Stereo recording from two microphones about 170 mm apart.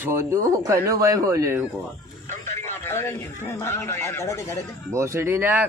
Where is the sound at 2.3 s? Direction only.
15° left (ahead or behind).